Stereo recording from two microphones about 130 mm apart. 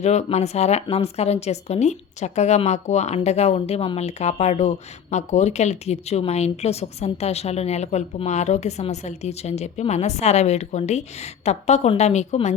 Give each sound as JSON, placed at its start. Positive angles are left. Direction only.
{"t": 0.0, "sound": "speech", "side_deg": 60}